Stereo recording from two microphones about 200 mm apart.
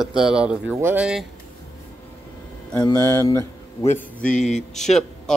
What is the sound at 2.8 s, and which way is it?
Speech, 15° left (ahead or behind).